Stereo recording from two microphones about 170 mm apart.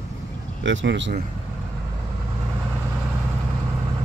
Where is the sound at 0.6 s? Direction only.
90° right.